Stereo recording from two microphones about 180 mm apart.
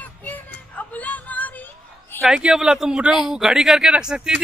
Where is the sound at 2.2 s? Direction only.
5° right (ahead or behind).